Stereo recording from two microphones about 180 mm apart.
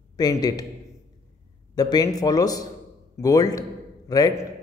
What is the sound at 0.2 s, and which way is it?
Speech, 20° left (ahead or behind).